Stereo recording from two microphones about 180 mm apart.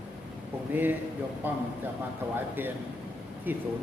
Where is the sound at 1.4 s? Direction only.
10° right (ahead or behind).